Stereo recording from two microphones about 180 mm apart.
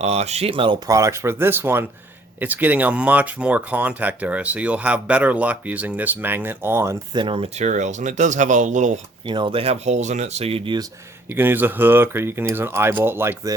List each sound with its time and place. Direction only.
0.0 s speech: 35° right (ahead or behind)
0.9 s speech: 15° right (ahead or behind); by 9.0 s 40° right (ahead or behind)
9.2 s speech: 25° right (ahead or behind)
11.3 s speech: 10° right (ahead or behind)